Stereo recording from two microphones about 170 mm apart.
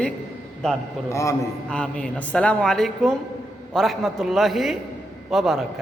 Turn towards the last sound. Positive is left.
turn(degrees=0)  # may be behind; listen again after turning